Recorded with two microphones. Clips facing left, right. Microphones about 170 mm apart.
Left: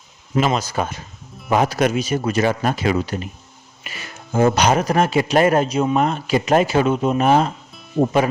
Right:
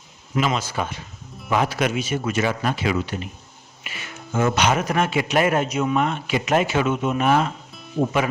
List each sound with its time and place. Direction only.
0.3 s speech: 40° left (ahead or behind)
7.7 s music: centre (ahead or behind)